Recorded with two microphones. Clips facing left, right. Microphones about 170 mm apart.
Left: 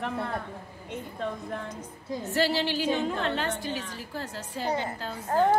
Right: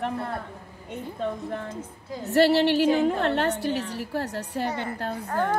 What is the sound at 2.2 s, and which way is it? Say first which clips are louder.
A woman's voice: right 8 dB; 65° right (ahead or behind).